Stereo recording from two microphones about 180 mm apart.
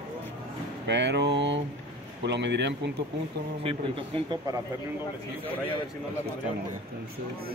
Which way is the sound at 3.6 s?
30° right (ahead or behind).